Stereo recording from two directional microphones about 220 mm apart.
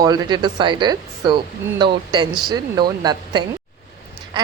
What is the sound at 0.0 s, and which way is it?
A woman's voice, 20° right (ahead or behind).